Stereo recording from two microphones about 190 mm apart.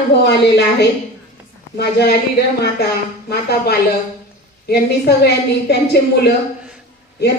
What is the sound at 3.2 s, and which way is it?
A woman's voice, 55° left (ahead or behind).